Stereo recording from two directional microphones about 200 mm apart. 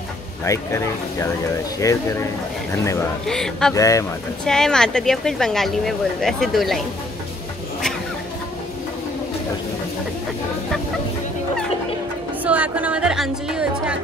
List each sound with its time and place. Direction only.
0.5 s speech: 15° left (ahead or behind)
3.3 s speech: 5° left (ahead or behind)
3.7 s speech: 15° left (ahead or behind)
4.5 s speech: 5° left (ahead or behind)
12.4 s speech: 5° right (ahead or behind)